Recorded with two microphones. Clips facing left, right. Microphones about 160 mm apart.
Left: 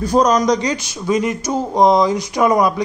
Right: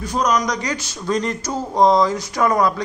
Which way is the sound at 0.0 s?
35° left (ahead or behind).